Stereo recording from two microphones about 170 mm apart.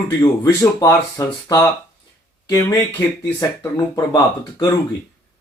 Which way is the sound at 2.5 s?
20° left (ahead or behind).